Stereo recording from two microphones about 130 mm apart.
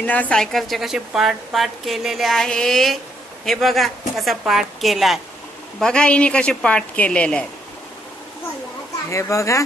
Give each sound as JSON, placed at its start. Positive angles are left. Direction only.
{"t": 0.0, "sound": "a woman's voice", "side_deg": 10}
{"t": 9.1, "sound": "speech", "side_deg": 25}